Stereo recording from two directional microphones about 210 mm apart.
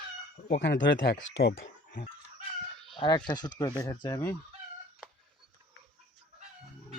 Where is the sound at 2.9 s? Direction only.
25° left (ahead or behind).